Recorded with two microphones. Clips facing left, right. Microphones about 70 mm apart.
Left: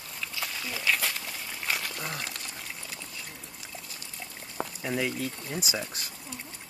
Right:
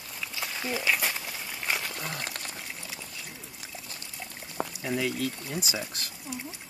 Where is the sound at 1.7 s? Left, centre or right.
Centre.